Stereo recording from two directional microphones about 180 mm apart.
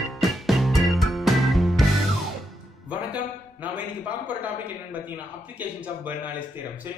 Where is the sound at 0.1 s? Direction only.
Centre (ahead or behind).